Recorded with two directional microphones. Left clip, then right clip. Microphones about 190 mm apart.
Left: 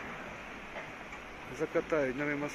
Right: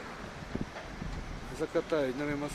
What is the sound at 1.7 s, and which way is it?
Speech, centre (ahead or behind).